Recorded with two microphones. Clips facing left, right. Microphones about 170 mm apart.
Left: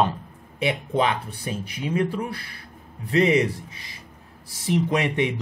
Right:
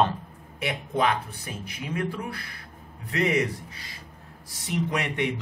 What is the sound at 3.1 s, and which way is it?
Speech, 25° left (ahead or behind).